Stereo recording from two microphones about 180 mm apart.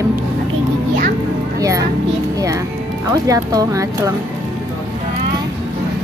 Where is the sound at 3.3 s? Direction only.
20° right (ahead or behind).